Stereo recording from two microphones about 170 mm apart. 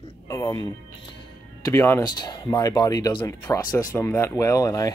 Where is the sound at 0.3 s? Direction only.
20° left (ahead or behind).